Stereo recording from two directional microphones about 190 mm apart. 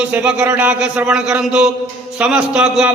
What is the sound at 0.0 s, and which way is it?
A man's voice, 5° right (ahead or behind).